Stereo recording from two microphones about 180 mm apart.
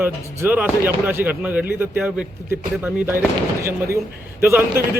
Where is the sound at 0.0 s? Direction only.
10° right (ahead or behind).